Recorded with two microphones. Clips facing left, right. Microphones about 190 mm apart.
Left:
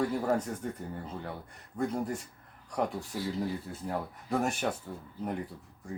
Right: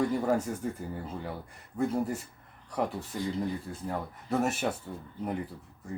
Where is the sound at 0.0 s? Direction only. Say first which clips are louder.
Right 2 dB; 5° left (ahead or behind).